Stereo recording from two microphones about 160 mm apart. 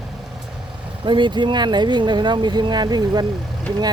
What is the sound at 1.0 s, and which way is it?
Speech, 30° right (ahead or behind).